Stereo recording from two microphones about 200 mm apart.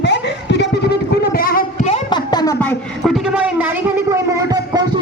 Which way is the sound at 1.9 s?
20° left (ahead or behind).